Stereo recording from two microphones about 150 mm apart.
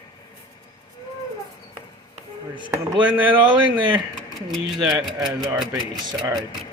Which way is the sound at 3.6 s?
30° right (ahead or behind).